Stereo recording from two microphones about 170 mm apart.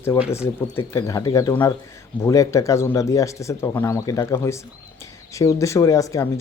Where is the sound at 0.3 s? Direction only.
15° left (ahead or behind).